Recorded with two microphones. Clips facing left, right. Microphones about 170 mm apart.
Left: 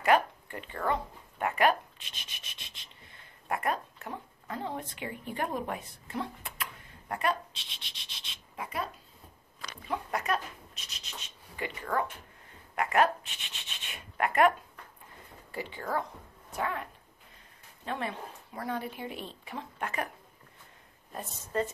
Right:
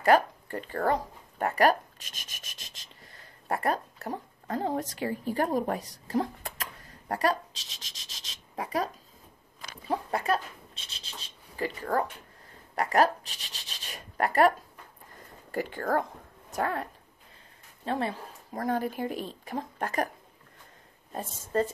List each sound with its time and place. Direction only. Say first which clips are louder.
0.0 s speech: right 3 dB; 35° right (ahead or behind)
15.5 s a woman's voice: right 5 dB; 45° right (ahead or behind)
17.8 s speech: right 5 dB; 35° right (ahead or behind)
21.5 s speech: right 4 dB; 35° right (ahead or behind)